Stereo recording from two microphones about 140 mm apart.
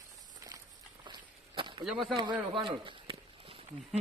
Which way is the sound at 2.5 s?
35° right (ahead or behind).